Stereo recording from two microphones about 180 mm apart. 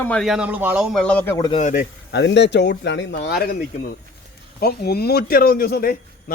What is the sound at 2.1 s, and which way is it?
Speech, 75° left (ahead or behind).